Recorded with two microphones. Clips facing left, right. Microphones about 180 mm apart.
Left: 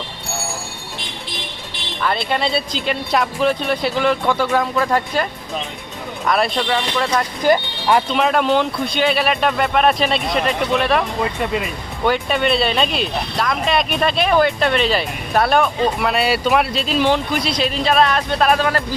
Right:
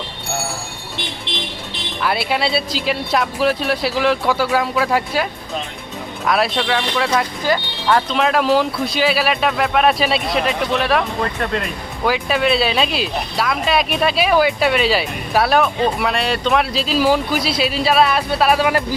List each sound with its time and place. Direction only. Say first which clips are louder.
2.0 s speech: right 1 dB; 5° right (ahead or behind)
7.4 s speech: left 3 dB; 15° left (ahead or behind)
8.1 s speech: right 1 dB; centre (ahead or behind)